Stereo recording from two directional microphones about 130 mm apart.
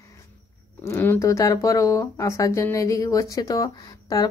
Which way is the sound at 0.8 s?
20° left (ahead or behind).